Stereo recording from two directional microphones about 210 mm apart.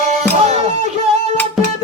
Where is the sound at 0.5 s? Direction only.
35° left (ahead or behind).